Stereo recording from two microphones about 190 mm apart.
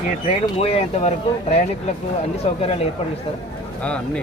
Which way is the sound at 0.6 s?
30° left (ahead or behind).